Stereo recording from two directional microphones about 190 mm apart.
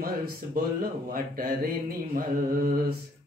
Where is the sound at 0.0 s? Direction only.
50° right (ahead or behind).